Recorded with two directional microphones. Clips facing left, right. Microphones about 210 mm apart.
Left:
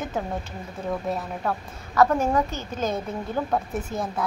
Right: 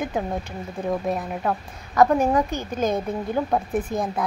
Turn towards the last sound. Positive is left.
turn(degrees=-15)  # may be behind; listen again after turning